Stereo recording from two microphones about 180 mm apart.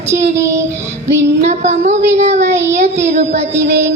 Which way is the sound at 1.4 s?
40° right (ahead or behind).